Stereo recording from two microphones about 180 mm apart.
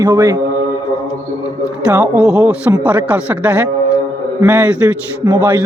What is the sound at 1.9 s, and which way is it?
A man's voice, 5° right (ahead or behind).